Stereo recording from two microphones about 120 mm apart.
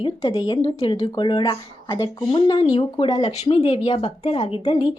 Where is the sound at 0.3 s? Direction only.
40° left (ahead or behind).